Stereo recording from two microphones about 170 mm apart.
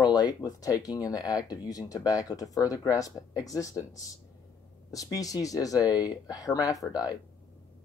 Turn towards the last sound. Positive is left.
turn(degrees=20)  # may be behind; listen again after turning